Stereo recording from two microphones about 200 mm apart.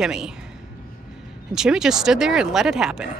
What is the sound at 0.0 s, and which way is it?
Speech, 5° right (ahead or behind).